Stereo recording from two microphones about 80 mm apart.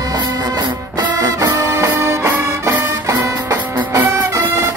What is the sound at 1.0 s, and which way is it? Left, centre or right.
Music, right.